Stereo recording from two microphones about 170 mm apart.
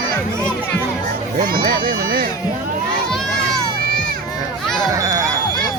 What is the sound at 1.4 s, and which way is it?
Music, 60° right (ahead or behind).